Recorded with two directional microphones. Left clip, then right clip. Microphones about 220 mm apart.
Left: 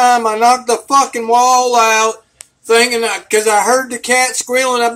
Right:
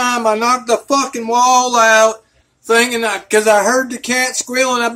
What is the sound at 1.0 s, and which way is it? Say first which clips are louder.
Speech: left 2 dB; 10° right (ahead or behind).